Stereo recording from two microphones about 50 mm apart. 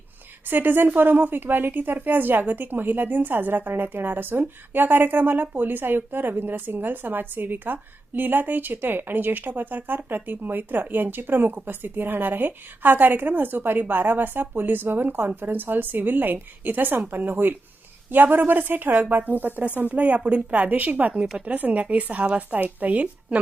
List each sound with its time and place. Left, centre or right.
0.5 s a woman's voice: right